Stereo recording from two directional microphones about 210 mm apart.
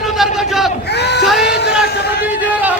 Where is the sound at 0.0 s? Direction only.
Centre (ahead or behind).